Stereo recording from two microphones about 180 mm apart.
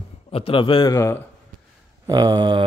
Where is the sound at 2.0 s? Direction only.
20° right (ahead or behind).